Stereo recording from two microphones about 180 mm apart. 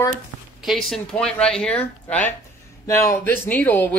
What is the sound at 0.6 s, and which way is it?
Speech, centre (ahead or behind).